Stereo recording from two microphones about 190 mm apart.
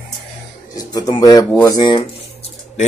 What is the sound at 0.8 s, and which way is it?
Speech, 20° left (ahead or behind).